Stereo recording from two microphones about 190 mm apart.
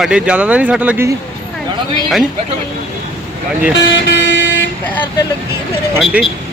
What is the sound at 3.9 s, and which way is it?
Vehicle, 70° left (ahead or behind).